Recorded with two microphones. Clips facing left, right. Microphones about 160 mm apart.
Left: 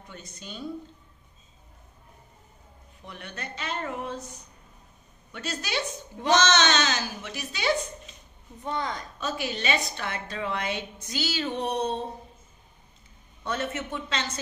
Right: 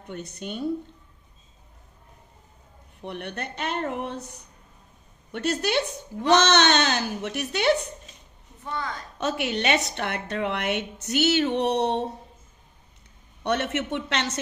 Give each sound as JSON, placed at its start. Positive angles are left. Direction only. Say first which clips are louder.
{"t": 0.0, "sound": "speech", "louder": "right 9 dB", "side_deg": -60}
{"t": 3.0, "sound": "speech", "louder": "right 7 dB", "side_deg": -60}
{"t": 8.6, "sound": "a woman's voice", "louder": "left 1 dB", "side_deg": 20}
{"t": 9.2, "sound": "a woman's voice", "louder": "right 6 dB", "side_deg": -65}
{"t": 13.4, "sound": "a woman's voice", "louder": "right 5 dB", "side_deg": -75}